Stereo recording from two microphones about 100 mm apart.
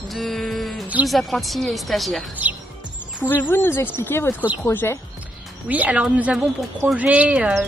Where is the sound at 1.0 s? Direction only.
Centre (ahead or behind).